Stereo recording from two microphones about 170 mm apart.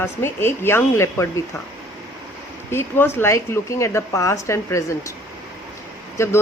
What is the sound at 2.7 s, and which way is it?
Speech, 15° left (ahead or behind).